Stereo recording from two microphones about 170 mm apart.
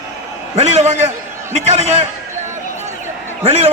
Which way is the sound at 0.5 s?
40° right (ahead or behind).